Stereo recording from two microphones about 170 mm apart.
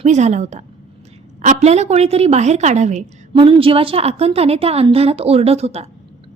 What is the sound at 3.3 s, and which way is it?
A woman's voice, 30° right (ahead or behind).